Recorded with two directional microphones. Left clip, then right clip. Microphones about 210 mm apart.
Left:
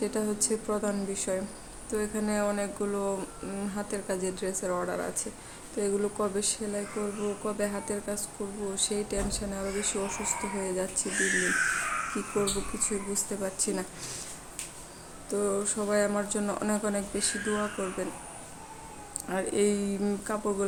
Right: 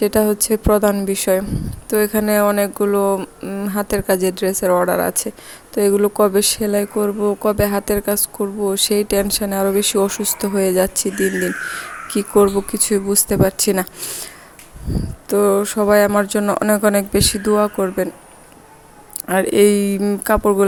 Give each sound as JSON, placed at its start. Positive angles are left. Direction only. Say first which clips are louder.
{"t": 0.0, "sound": "speech", "louder": "right 15 dB", "side_deg": -45}
{"t": 12.1, "sound": "speech", "louder": "right 16 dB", "side_deg": -45}
{"t": 15.3, "sound": "speech", "louder": "right 14 dB", "side_deg": -40}
{"t": 19.3, "sound": "speech", "louder": "right 14 dB", "side_deg": -40}